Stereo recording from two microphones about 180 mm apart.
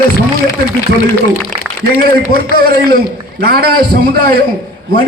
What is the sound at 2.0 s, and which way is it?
A man's voice, 55° right (ahead or behind).